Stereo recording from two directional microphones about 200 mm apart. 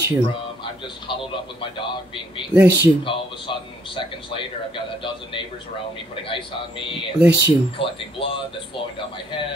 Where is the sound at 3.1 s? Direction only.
25° left (ahead or behind).